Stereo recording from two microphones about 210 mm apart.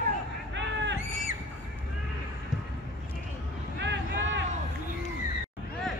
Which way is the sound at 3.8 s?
55° right (ahead or behind).